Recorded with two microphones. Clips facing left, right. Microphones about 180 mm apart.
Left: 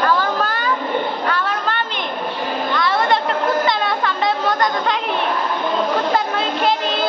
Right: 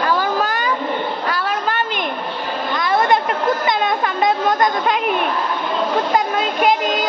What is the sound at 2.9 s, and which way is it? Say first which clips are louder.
Chatter: right 4 dB; 20° right (ahead or behind).